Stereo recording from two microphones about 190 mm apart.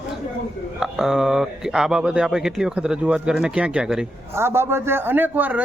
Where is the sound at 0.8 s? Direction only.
Centre (ahead or behind).